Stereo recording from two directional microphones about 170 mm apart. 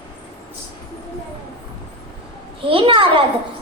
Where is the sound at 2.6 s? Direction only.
30° right (ahead or behind).